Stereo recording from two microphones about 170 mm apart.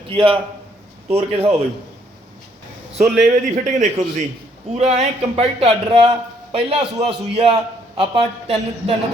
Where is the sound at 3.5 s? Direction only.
45° right (ahead or behind).